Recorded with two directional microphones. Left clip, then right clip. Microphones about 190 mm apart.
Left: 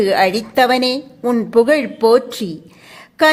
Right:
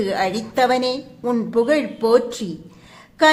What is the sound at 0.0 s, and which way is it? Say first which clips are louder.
A woman's voice: left 7 dB; 30° left (ahead or behind).